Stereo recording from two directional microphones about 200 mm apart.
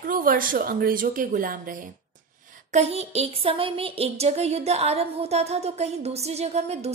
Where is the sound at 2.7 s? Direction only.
35° right (ahead or behind).